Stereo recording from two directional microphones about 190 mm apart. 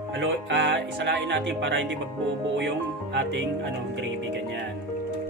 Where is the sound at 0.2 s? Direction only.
70° right (ahead or behind).